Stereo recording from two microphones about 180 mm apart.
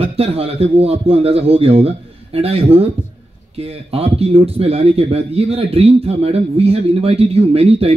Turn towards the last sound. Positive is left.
turn(degrees=-35)  # may be behind; listen again after turning